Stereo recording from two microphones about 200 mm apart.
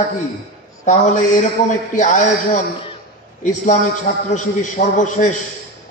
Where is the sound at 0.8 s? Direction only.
35° left (ahead or behind).